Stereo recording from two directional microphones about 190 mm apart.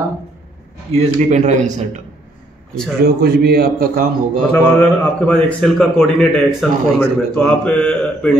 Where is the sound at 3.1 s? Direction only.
55° right (ahead or behind).